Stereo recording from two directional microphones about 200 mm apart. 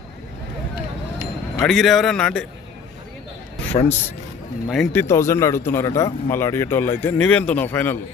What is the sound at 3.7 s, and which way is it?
Speech, 30° left (ahead or behind).